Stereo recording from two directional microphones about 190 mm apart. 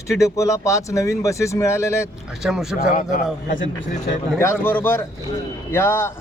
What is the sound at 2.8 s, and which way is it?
A man's voice, 45° left (ahead or behind).